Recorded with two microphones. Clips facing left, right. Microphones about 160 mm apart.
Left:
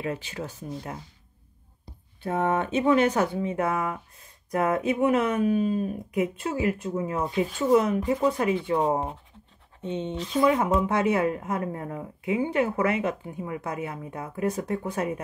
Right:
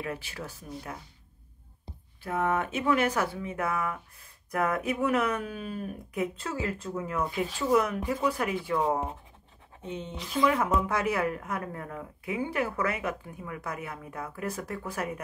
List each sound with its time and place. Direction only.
0.0 s a woman's voice: 25° left (ahead or behind)
2.2 s a woman's voice: 30° left (ahead or behind)